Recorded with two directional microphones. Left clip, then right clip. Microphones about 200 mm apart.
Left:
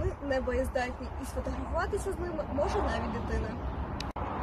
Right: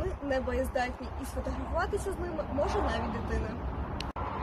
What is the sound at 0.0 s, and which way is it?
A woman's voice, 10° left (ahead or behind).